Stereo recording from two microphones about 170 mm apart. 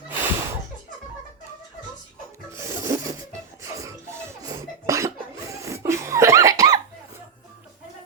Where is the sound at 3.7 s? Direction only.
15° right (ahead or behind).